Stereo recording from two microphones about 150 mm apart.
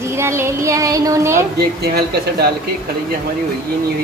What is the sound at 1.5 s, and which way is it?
Speech, 90° right.